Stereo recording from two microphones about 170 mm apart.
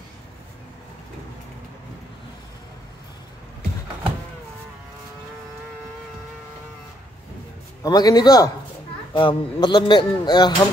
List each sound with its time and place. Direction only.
7.8 s speech: 20° left (ahead or behind)